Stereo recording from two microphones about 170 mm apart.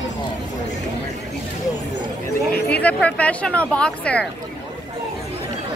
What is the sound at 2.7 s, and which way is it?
Speech, 10° left (ahead or behind).